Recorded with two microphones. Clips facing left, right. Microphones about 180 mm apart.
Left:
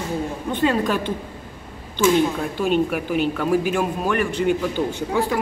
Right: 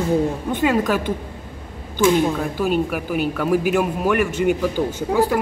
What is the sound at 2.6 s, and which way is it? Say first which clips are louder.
A man's voice: left 3 dB; 5° right (ahead or behind).